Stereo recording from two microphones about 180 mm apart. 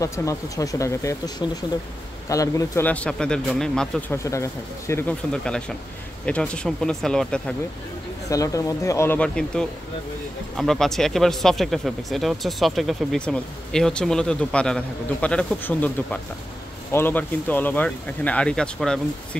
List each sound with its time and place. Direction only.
0.0 s speech: 15° left (ahead or behind)
4.1 s speech: 15° left (ahead or behind)
8.3 s speech: 20° left (ahead or behind)